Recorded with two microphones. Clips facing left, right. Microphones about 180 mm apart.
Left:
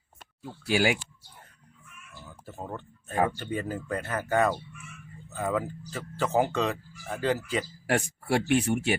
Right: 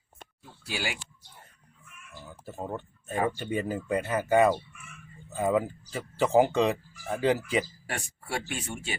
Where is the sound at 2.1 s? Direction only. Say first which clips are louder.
Right 2 dB; 10° right (ahead or behind).